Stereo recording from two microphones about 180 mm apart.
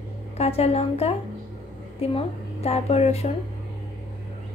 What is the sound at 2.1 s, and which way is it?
Speech, 35° left (ahead or behind).